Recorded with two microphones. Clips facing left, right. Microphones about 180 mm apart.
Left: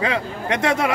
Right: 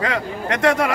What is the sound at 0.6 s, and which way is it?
Speech, 25° left (ahead or behind).